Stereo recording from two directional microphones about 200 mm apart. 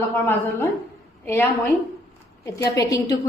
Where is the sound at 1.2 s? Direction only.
10° left (ahead or behind).